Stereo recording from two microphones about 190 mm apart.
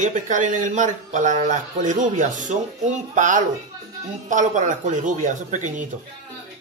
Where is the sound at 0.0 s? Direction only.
40° right (ahead or behind).